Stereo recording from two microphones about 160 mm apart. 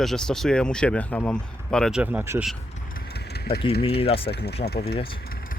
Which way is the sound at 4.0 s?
35° left (ahead or behind).